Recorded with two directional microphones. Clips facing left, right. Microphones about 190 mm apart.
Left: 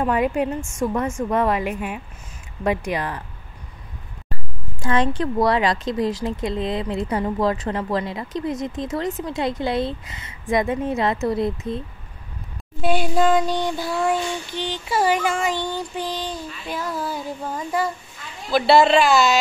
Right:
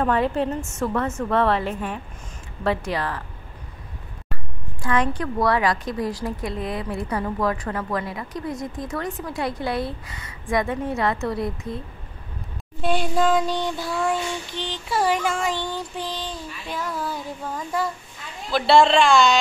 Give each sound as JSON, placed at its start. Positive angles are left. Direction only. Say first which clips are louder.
{"t": 0.0, "sound": "a woman's voice", "louder": "left 1 dB", "side_deg": 15}
{"t": 4.8, "sound": "speech", "louder": "left 2 dB", "side_deg": 25}
{"t": 12.8, "sound": "child singing", "louder": "left 2 dB", "side_deg": 5}